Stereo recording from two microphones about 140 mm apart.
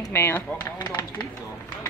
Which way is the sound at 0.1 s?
15° left (ahead or behind).